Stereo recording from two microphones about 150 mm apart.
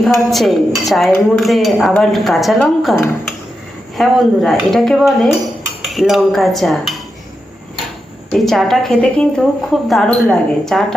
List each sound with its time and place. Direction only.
0.0 s a woman's voice: centre (ahead or behind)
3.9 s a woman's voice: centre (ahead or behind)
5.8 s cutlery: centre (ahead or behind)
8.3 s a woman's voice: centre (ahead or behind)